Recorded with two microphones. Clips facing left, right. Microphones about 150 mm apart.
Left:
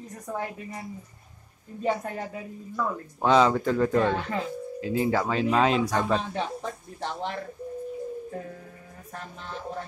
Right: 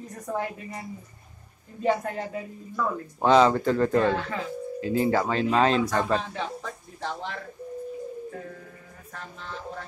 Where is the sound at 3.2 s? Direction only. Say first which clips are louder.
Right 2 dB; centre (ahead or behind).